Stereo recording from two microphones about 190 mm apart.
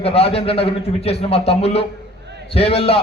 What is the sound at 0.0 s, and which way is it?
A man's voice, 30° left (ahead or behind).